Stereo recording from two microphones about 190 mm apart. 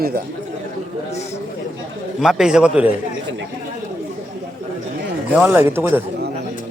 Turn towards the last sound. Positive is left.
turn(degrees=-10)  # may be behind; listen again after turning